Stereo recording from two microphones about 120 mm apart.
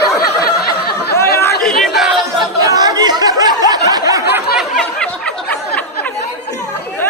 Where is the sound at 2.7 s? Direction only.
30° right (ahead or behind).